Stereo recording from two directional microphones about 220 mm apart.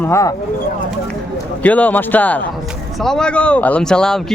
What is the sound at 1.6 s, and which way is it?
A man's voice, 5° left (ahead or behind).